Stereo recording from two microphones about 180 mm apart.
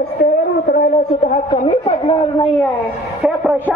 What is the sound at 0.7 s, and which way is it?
Speech, 55° left (ahead or behind).